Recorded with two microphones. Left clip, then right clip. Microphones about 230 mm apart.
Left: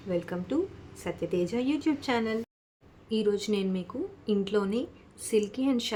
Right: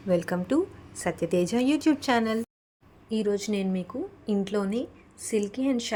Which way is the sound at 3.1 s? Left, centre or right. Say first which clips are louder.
Even; centre.